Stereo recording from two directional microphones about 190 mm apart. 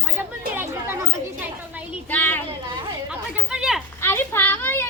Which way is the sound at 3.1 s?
5° right (ahead or behind).